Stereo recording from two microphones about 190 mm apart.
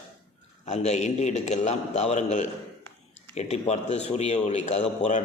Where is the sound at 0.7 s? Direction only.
35° left (ahead or behind).